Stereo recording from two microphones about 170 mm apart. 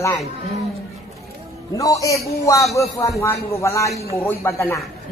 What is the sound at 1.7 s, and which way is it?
A man's voice, 20° left (ahead or behind).